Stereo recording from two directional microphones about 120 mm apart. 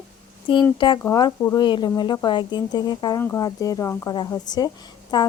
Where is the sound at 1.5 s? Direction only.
40° left (ahead or behind).